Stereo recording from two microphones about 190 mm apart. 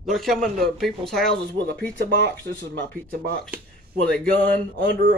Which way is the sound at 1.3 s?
60° right (ahead or behind).